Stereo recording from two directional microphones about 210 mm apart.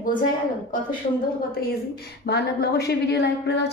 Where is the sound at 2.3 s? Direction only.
50° left (ahead or behind).